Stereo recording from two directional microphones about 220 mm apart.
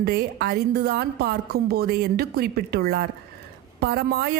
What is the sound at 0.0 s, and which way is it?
Speech, 45° right (ahead or behind).